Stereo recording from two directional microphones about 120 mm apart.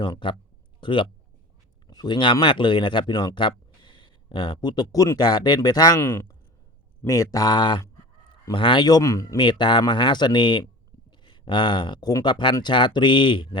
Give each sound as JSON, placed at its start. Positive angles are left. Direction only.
{"t": 0.0, "sound": "a man's voice", "side_deg": 40}
{"t": 6.0, "sound": "speech", "side_deg": 20}
{"t": 9.4, "sound": "speech", "side_deg": 40}